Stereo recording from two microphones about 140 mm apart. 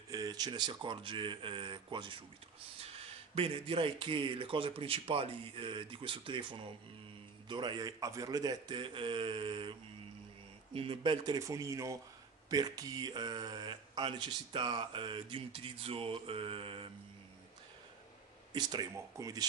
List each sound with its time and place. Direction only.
0.1 s speech: 25° right (ahead or behind)
11.3 s speech: 20° right (ahead or behind); by 16.9 s 40° right (ahead or behind)
18.5 s speech: 30° right (ahead or behind)